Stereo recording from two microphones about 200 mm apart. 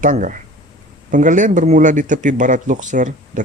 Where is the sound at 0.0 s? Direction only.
40° right (ahead or behind).